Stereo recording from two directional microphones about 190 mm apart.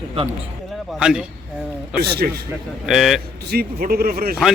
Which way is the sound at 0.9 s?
5° right (ahead or behind).